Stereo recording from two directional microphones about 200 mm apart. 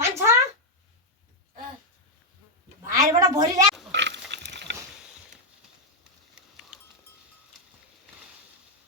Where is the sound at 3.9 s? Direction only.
60° right (ahead or behind).